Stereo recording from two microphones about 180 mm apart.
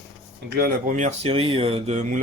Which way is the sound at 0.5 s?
60° right (ahead or behind).